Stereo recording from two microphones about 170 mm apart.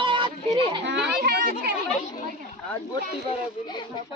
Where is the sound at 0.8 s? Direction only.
85° right.